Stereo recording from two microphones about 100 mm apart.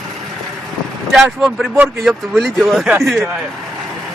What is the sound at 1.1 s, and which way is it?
Speech, 5° right (ahead or behind).